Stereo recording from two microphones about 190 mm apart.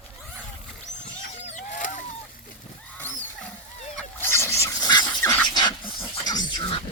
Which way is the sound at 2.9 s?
10° left (ahead or behind).